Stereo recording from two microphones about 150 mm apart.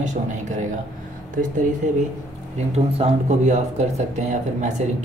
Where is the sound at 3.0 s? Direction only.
50° right (ahead or behind).